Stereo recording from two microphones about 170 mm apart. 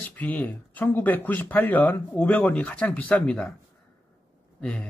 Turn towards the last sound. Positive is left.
turn(degrees=5)  # may be behind; listen again after turning